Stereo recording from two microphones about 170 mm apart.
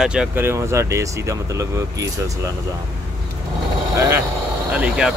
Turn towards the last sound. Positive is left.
turn(degrees=-5)  # may be behind; listen again after turning